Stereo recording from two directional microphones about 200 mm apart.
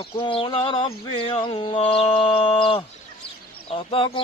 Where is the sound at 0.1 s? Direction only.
25° left (ahead or behind).